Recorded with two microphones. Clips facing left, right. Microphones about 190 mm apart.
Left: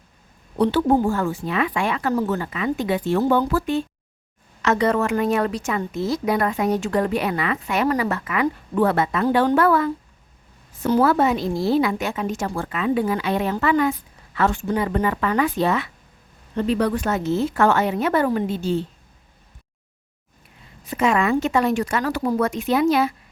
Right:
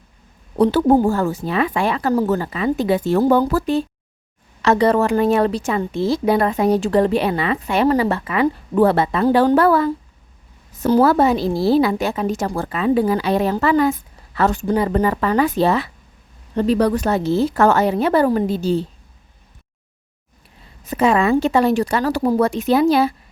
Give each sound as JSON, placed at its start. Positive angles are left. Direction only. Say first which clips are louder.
{"t": 0.6, "sound": "a woman's voice", "louder": "right 4 dB", "side_deg": -40}
{"t": 20.8, "sound": "a woman's voice", "louder": "right 4 dB", "side_deg": -35}